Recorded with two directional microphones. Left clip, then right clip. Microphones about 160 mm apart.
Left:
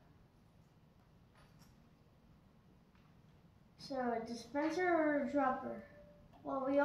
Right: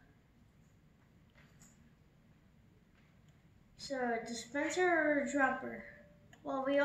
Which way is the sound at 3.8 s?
25° right (ahead or behind).